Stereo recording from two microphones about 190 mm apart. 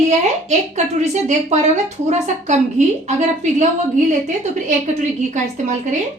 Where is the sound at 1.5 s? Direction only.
40° right (ahead or behind).